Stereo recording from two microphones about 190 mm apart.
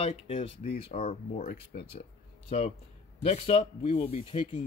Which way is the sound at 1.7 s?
60° left (ahead or behind).